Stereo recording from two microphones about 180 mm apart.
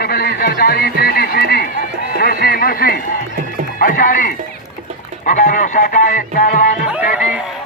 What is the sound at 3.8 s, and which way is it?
Horse, 50° left (ahead or behind).